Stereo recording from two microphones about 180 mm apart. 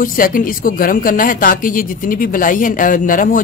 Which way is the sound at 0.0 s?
50° left (ahead or behind).